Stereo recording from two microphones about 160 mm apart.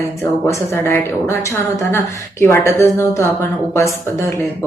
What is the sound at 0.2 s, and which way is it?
A woman's voice, 15° left (ahead or behind).